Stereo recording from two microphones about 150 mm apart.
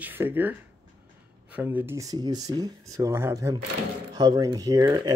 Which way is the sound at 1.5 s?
15° right (ahead or behind).